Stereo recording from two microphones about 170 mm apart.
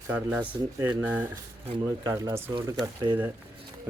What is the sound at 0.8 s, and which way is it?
A man's voice, 10° right (ahead or behind).